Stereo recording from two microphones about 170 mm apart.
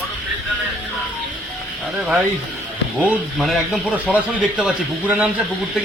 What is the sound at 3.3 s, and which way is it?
A man's voice, centre (ahead or behind).